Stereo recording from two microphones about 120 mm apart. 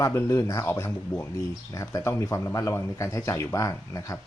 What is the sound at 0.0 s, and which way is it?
Speech, 20° left (ahead or behind).